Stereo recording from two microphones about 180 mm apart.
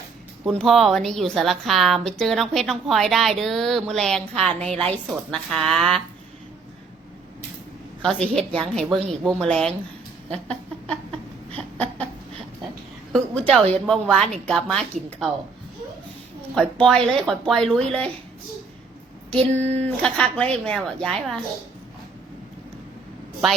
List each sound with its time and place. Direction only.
0.4 s a woman's voice: centre (ahead or behind)
8.0 s a woman's voice: 5° left (ahead or behind)
11.5 s a sound: 5° left (ahead or behind)
13.1 s a woman's voice: centre (ahead or behind)
16.8 s a woman's voice: centre (ahead or behind)
19.3 s a sound: 5° left (ahead or behind)
19.6 s speech: 35° right (ahead or behind)
20.0 s a woman's voice: 5° left (ahead or behind)